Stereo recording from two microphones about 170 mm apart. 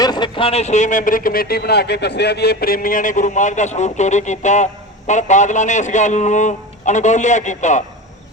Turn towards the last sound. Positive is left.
turn(degrees=45)  # may be behind; listen again after turning